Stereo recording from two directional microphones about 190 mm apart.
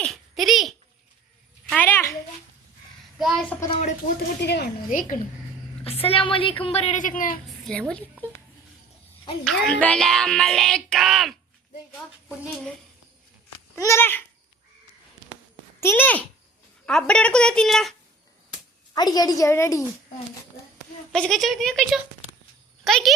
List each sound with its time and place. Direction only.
0.0 s a sound: centre (ahead or behind)
1.7 s a sound: 10° left (ahead or behind)
3.2 s a child's voice: centre (ahead or behind)
4.4 s speech: 60° left (ahead or behind)
4.9 s a woman's voice: 40° left (ahead or behind)
5.8 s a woman's voice: 30° left (ahead or behind)
7.6 s a woman's voice: 5° left (ahead or behind)
9.4 s speech: centre (ahead or behind)
13.7 s a woman's voice: 15° left (ahead or behind)
15.8 s a woman's voice: 10° left (ahead or behind)
18.9 s a woman's voice: 20° left (ahead or behind)
21.1 s speech: 5° left (ahead or behind)